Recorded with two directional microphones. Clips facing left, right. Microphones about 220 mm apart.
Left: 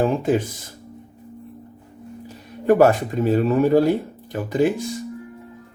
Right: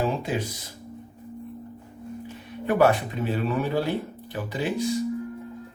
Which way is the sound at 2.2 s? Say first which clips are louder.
Left 11 dB; 45° left (ahead or behind).